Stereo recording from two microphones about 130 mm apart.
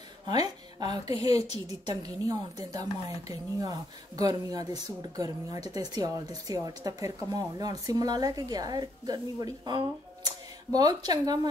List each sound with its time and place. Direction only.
0.3 s a woman's voice: 30° right (ahead or behind)